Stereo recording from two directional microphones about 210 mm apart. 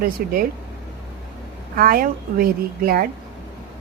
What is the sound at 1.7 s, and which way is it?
A woman's voice, 45° right (ahead or behind).